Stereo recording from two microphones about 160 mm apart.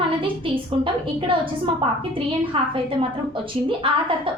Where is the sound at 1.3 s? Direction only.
30° right (ahead or behind).